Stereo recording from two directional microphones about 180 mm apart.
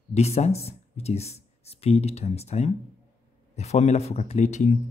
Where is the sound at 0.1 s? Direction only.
35° left (ahead or behind).